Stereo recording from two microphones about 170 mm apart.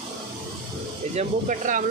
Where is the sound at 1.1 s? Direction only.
45° right (ahead or behind).